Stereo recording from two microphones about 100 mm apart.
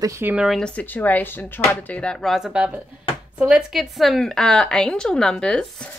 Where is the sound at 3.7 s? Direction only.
Centre (ahead or behind).